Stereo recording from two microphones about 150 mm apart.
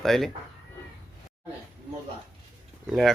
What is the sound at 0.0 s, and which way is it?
Speech, centre (ahead or behind).